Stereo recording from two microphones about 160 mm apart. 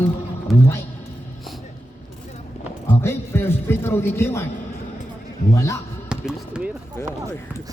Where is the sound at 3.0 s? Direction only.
15° left (ahead or behind).